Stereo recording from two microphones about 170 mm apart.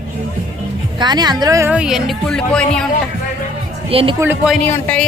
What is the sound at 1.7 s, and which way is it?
A woman's voice, 5° right (ahead or behind).